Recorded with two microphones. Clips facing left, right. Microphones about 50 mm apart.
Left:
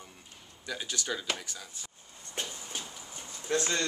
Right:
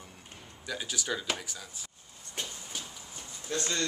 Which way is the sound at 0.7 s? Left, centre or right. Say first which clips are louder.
Right 1 dB; centre.